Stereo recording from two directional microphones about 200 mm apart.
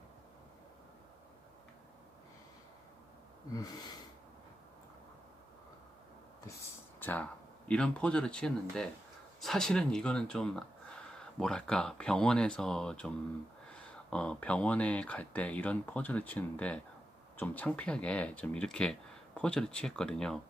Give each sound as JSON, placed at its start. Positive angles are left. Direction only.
{"t": 3.5, "sound": "gasp", "side_deg": 20}
{"t": 7.0, "sound": "speech", "side_deg": 10}